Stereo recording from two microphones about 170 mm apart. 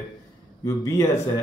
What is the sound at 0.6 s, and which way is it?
Speech, 20° left (ahead or behind).